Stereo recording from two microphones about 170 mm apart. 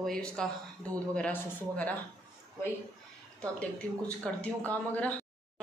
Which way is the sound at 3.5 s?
5° left (ahead or behind).